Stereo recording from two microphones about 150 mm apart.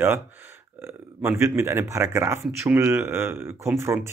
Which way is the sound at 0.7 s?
15° right (ahead or behind).